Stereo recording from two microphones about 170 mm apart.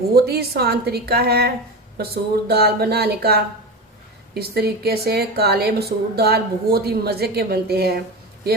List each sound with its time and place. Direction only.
0.1 s a woman's voice: 65° right (ahead or behind)